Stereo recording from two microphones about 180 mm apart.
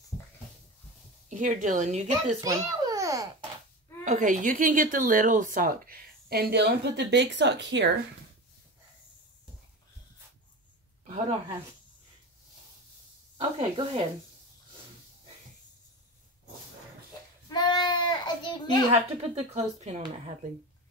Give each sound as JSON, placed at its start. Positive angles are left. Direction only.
{"t": 1.3, "sound": "speech", "side_deg": -45}
{"t": 2.4, "sound": "babbling", "side_deg": -20}
{"t": 4.0, "sound": "speech", "side_deg": -45}
{"t": 13.6, "sound": "speech", "side_deg": -30}
{"t": 17.5, "sound": "a sound", "side_deg": 25}
{"t": 18.9, "sound": "speech", "side_deg": -40}